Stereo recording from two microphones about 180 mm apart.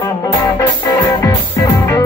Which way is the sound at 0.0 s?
20° left (ahead or behind).